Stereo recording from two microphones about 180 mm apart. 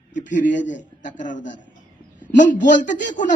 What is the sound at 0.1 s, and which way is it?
A man's voice, 45° left (ahead or behind).